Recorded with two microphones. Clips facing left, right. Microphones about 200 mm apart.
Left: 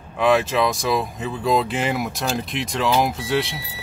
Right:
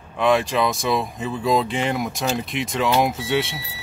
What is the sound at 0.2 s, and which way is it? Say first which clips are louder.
Speech: left 1 dB; centre (ahead or behind).